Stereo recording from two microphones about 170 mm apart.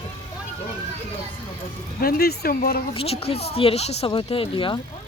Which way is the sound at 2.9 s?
35° left (ahead or behind).